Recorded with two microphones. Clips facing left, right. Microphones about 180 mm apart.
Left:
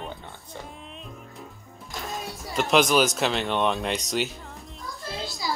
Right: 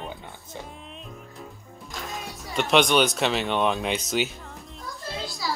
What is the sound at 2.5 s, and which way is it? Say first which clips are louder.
Speech: even; centre (ahead or behind).